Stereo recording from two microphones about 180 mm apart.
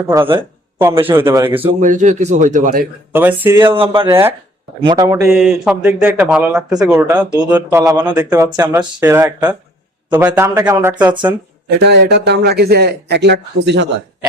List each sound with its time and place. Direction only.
0.8 s speech: 15° right (ahead or behind)
1.8 s a man's voice: 45° right (ahead or behind)
3.1 s speech: 10° right (ahead or behind)
3.7 s speech: 30° right (ahead or behind)
4.1 s speech: 15° right (ahead or behind)
5.3 s speech: centre (ahead or behind); by 11.0 s 15° right (ahead or behind)
11.7 s speech: 70° right (ahead or behind)